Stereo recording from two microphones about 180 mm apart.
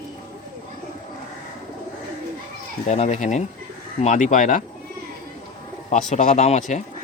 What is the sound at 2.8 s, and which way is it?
Speech, 40° left (ahead or behind).